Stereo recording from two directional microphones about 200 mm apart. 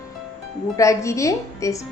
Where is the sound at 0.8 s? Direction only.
15° left (ahead or behind).